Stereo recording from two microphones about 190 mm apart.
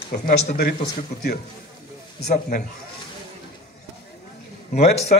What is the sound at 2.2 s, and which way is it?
Speech, 50° left (ahead or behind).